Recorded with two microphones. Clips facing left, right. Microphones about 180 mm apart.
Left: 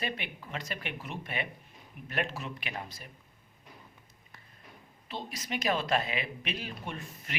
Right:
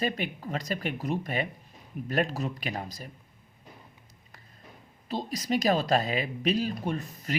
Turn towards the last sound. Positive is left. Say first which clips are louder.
# right 9 dB
turn(degrees=-40)  # may be behind; listen again after turning